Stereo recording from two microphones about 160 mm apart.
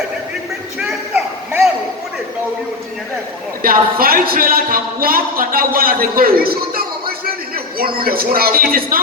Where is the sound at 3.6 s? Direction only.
65° right (ahead or behind).